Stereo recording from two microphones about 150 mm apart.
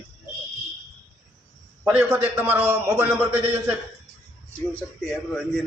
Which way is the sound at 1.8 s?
10° right (ahead or behind).